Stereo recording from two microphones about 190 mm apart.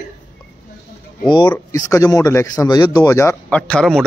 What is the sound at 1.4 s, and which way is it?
Speech, 15° left (ahead or behind).